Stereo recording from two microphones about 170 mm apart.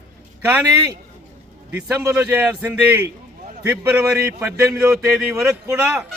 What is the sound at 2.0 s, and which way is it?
Speech, 10° right (ahead or behind).